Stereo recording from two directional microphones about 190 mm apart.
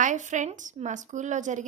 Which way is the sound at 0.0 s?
40° right (ahead or behind).